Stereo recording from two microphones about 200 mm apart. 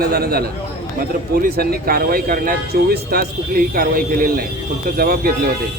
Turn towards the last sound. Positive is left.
turn(degrees=-50)  # may be behind; listen again after turning